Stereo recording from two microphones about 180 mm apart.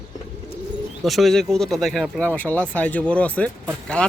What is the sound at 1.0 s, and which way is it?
Speech, centre (ahead or behind).